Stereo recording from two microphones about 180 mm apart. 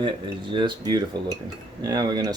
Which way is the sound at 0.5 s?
25° right (ahead or behind).